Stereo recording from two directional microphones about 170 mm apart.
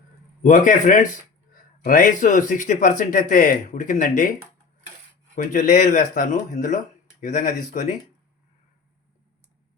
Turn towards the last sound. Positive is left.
turn(degrees=45)  # may be behind; listen again after turning